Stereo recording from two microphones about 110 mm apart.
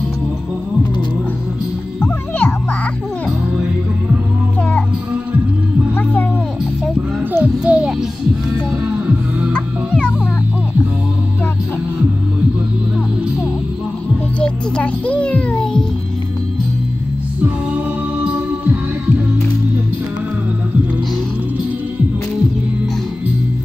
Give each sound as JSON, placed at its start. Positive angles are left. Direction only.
{"t": 2.0, "sound": "music", "side_deg": 20}
{"t": 7.3, "sound": "a sound", "side_deg": -10}
{"t": 8.9, "sound": "music", "side_deg": -10}
{"t": 9.5, "sound": "music", "side_deg": 10}
{"t": 14.4, "sound": "music", "side_deg": 10}
{"t": 18.2, "sound": "music", "side_deg": -15}